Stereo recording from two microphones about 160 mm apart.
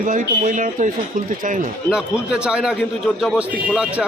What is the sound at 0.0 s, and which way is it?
Speech, 55° right (ahead or behind).